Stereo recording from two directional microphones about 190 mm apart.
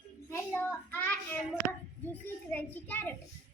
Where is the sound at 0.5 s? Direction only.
10° left (ahead or behind).